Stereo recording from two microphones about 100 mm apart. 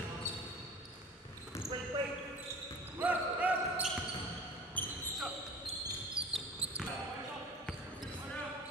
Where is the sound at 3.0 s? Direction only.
15° right (ahead or behind).